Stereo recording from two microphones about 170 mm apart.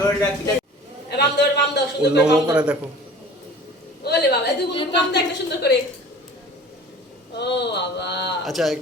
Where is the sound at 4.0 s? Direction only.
75° left (ahead or behind).